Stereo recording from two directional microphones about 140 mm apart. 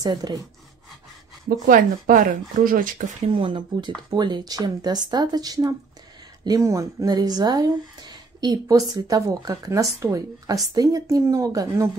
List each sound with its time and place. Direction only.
0.0 s speech: 30° right (ahead or behind)
1.7 s speech: 70° right (ahead or behind)
3.3 s speech: 40° right (ahead or behind)